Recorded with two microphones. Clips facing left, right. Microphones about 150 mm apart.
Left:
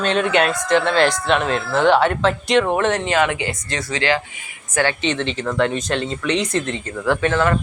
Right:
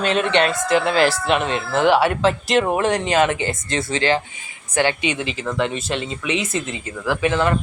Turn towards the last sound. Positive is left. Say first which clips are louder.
# left 1 dB
turn(degrees=-20)  # may be behind; listen again after turning